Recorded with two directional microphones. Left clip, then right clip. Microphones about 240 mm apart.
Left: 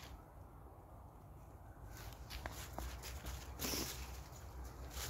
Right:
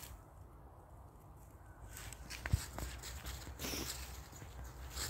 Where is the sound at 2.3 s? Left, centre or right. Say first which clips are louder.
Right 3 dB; right.